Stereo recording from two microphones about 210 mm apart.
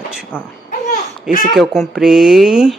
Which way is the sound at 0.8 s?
40° left (ahead or behind).